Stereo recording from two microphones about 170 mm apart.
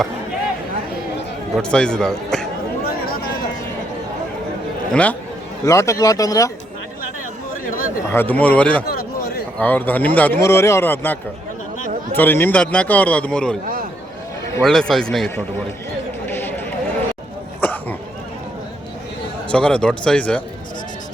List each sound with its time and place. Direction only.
1.5 s speech: 5° left (ahead or behind)
4.9 s a man's voice: 10° left (ahead or behind)
5.6 s speech: 20° left (ahead or behind)
7.6 s chatter: 55° left (ahead or behind)
8.1 s a man's voice: 10° left (ahead or behind)
8.9 s a sound: 65° left (ahead or behind)
9.6 s a man's voice: 10° left (ahead or behind)
14.6 s speech: 5° left (ahead or behind)
16.2 s run: 10° left (ahead or behind)
17.6 s a sound: 10° left (ahead or behind)
19.5 s a man's voice: 5° left (ahead or behind)